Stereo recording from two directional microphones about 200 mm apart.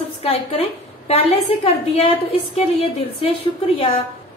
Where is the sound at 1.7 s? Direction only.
30° left (ahead or behind).